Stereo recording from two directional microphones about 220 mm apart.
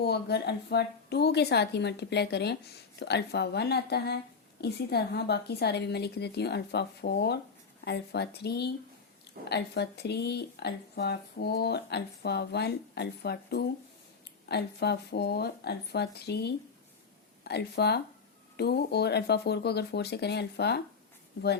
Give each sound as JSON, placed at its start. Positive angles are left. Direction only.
{"t": 0.0, "sound": "speech", "side_deg": 45}